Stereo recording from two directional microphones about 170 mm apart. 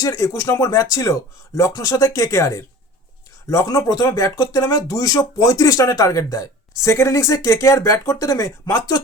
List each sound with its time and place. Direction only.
0.0 s speech: 20° left (ahead or behind)